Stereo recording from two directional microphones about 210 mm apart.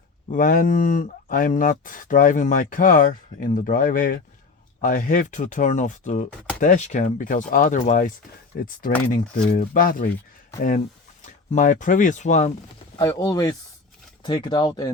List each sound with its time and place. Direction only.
0.3 s speech: 40° left (ahead or behind)
11.2 s speech: 35° left (ahead or behind)
13.0 s speech: 20° left (ahead or behind)